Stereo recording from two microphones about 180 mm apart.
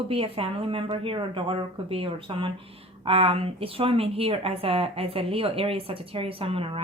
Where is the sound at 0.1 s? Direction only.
30° right (ahead or behind).